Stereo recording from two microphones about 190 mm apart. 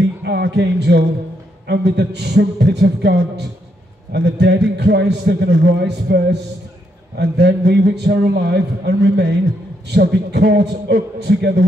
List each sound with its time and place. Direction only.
0.0 s music: 60° right (ahead or behind)
1.7 s a man's voice: 65° right (ahead or behind)